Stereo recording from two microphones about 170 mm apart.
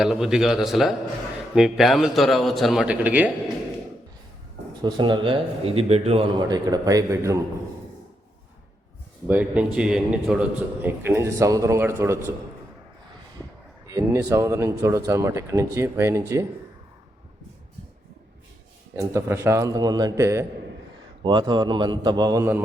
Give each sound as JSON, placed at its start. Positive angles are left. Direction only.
{"t": 0.0, "sound": "a man's voice", "side_deg": -5}
{"t": 4.8, "sound": "a man's voice", "side_deg": -25}
{"t": 6.5, "sound": "a man's voice", "side_deg": -20}
{"t": 9.2, "sound": "a man's voice", "side_deg": -10}
{"t": 13.8, "sound": "speech", "side_deg": -20}
{"t": 18.9, "sound": "speech", "side_deg": -15}
{"t": 21.2, "sound": "a man's voice", "side_deg": -25}